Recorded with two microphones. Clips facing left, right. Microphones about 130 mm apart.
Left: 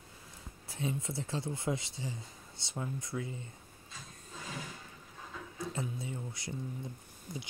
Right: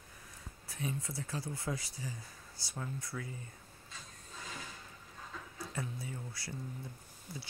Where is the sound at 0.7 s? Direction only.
25° left (ahead or behind).